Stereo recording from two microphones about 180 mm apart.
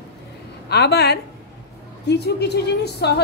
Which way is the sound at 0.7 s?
65° left (ahead or behind).